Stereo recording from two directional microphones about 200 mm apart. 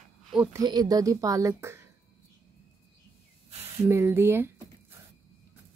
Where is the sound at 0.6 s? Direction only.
20° right (ahead or behind).